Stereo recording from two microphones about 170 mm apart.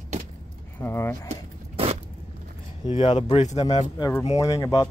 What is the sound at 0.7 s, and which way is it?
Speech, 15° left (ahead or behind).